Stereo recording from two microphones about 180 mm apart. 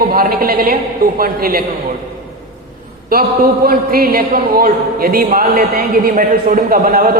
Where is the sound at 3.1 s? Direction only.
55° right (ahead or behind).